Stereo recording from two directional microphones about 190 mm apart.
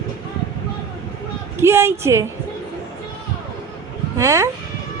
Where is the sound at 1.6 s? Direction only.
15° right (ahead or behind).